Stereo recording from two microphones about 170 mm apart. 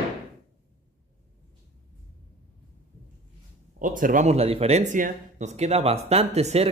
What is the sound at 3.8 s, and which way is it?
Speech, 55° right (ahead or behind).